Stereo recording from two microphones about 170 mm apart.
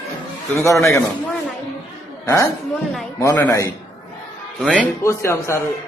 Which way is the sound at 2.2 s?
20° left (ahead or behind).